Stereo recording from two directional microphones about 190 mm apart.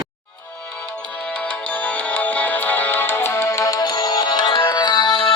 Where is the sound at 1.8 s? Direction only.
10° left (ahead or behind).